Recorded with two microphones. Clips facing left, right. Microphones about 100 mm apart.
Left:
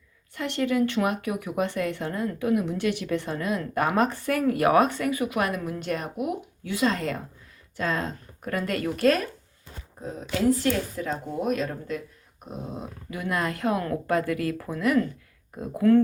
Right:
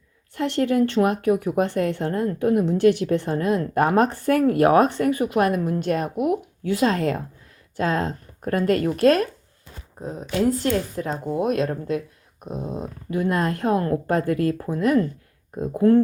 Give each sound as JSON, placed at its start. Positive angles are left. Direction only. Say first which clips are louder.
{"t": 0.3, "sound": "a woman's voice", "louder": "right 4 dB", "side_deg": -40}
{"t": 11.0, "sound": "speech", "louder": "right 3 dB", "side_deg": -40}
{"t": 11.3, "sound": "speech", "louder": "right 5 dB", "side_deg": -60}
{"t": 12.7, "sound": "speech", "louder": "right 8 dB", "side_deg": -40}